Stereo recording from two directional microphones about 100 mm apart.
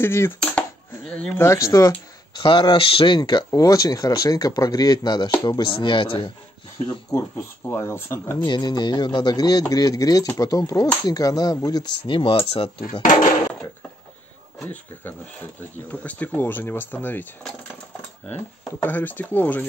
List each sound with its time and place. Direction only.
0.0 s speech: 25° left (ahead or behind)
0.4 s a sound: 10° left (ahead or behind)
1.4 s speech: 30° left (ahead or behind)
2.4 s speech: 55° left (ahead or behind)
3.2 s speech: 45° left (ahead or behind)
5.7 s speech: 55° left (ahead or behind)
7.1 s speech: 25° left (ahead or behind)
8.4 s speech: 50° left (ahead or behind)
12.0 s speech: 60° left (ahead or behind)
15.9 s speech: 15° left (ahead or behind)
18.3 s speech: 20° left (ahead or behind)